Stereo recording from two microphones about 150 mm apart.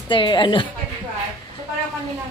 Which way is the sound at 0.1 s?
30° left (ahead or behind).